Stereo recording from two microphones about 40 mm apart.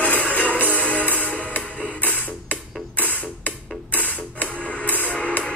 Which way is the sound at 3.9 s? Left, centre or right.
Left.